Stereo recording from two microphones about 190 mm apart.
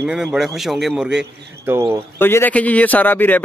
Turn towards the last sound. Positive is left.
turn(degrees=10)  # may be behind; listen again after turning